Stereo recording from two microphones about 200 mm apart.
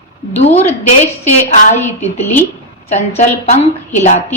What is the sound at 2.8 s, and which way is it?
A woman's voice, 35° left (ahead or behind).